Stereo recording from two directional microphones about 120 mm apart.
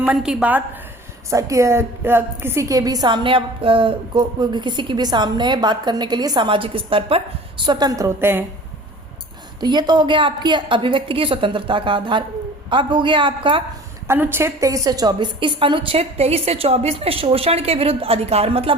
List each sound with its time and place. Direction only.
0.0 s a woman's voice: 10° right (ahead or behind)
1.3 s a woman's voice: 25° right (ahead or behind); by 7.2 s 45° right (ahead or behind)
7.6 s a woman's voice: 35° right (ahead or behind); by 8.4 s 20° right (ahead or behind)
9.6 s a woman's voice: 35° right (ahead or behind)
14.1 s a woman's voice: 20° right (ahead or behind); by 18.7 s 55° right (ahead or behind)